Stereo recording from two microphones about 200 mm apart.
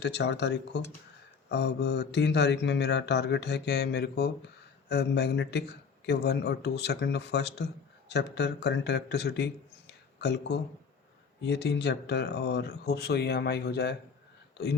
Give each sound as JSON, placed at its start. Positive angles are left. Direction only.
{"t": 0.0, "sound": "speech", "side_deg": 60}